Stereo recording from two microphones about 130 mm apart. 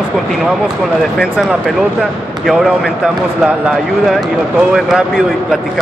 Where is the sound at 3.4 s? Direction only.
5° right (ahead or behind).